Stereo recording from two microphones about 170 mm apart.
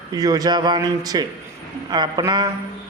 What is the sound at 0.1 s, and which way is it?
A man's voice, 20° right (ahead or behind).